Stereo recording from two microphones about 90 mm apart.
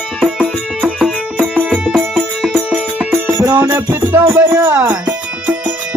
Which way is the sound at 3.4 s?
20° right (ahead or behind).